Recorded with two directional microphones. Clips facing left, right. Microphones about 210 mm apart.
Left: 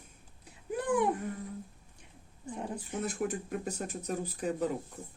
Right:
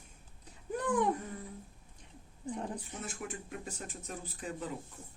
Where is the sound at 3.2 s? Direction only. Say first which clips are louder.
Left 8 dB; 40° left (ahead or behind).